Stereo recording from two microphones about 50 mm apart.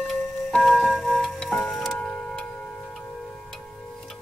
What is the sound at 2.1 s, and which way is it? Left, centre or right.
Tick-tock, centre.